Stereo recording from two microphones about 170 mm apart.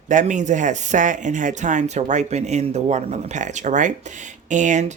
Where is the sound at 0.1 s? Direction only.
45° right (ahead or behind).